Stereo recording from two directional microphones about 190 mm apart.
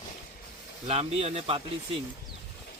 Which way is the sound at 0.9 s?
30° right (ahead or behind).